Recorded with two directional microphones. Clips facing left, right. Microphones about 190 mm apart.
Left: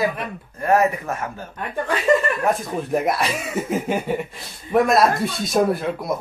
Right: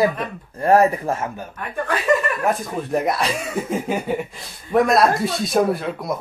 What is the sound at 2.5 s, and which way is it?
Speech, centre (ahead or behind).